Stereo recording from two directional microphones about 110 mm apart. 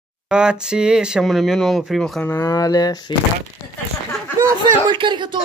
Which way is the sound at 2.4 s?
35° left (ahead or behind).